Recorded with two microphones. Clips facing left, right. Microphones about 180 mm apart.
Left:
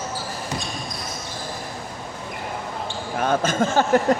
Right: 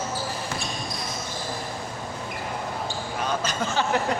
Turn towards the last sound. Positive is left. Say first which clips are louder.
# left 6 dB
turn(degrees=45)  # may be behind; listen again after turning